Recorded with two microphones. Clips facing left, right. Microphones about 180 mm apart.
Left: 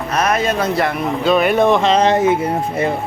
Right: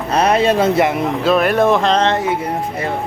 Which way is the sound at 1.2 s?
Centre (ahead or behind).